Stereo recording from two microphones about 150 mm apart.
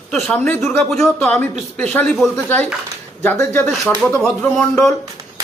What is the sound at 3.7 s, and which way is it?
Speech, 5° left (ahead or behind).